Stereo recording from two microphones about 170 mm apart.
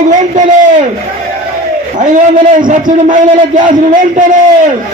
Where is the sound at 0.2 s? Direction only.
45° right (ahead or behind).